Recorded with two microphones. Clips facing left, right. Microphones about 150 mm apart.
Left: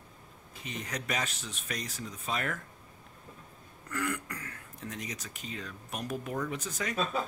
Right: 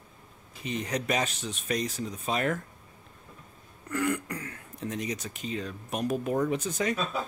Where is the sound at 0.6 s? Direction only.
20° right (ahead or behind).